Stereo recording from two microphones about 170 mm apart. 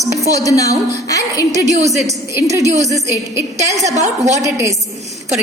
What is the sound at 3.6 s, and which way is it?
Speech, 20° right (ahead or behind).